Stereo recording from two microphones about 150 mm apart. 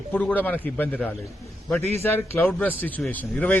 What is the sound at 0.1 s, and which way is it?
Speech, 10° left (ahead or behind).